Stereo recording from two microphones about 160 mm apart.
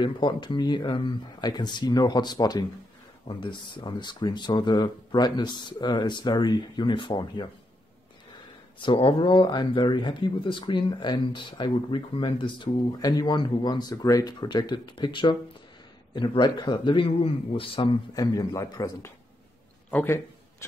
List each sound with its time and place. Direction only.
0.0 s speech: 30° left (ahead or behind)
8.7 s speech: 30° left (ahead or behind)
19.9 s a man's voice: 10° left (ahead or behind)